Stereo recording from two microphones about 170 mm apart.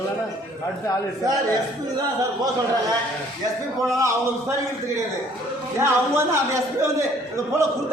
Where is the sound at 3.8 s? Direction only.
20° right (ahead or behind).